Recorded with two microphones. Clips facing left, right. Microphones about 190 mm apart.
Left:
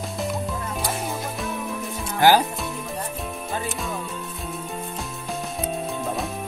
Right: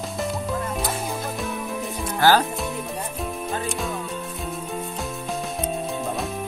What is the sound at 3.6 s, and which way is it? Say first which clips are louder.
Music: right 2 dB; centre (ahead or behind).